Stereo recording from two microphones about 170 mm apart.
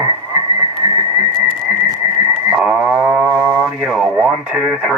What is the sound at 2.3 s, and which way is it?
Livestock, 5° right (ahead or behind).